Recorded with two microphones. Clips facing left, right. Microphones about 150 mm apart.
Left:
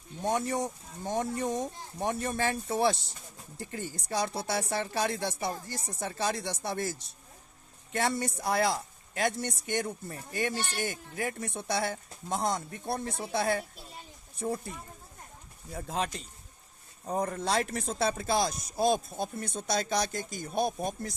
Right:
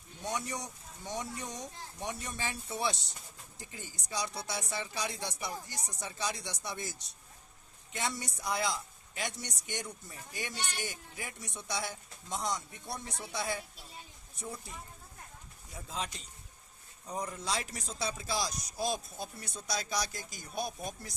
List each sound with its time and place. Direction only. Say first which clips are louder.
0.2 s speech: left 8 dB; 50° left (ahead or behind)
15.7 s speech: left 7 dB; 60° left (ahead or behind)
17.1 s speech: left 7 dB; 55° left (ahead or behind)